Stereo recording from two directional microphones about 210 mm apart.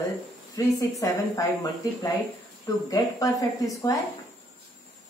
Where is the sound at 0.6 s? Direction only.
15° left (ahead or behind).